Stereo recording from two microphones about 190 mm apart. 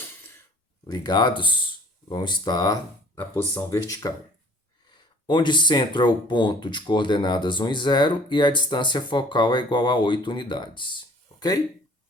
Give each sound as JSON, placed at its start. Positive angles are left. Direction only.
{"t": 0.9, "sound": "speech", "side_deg": 20}
{"t": 5.2, "sound": "speech", "side_deg": 25}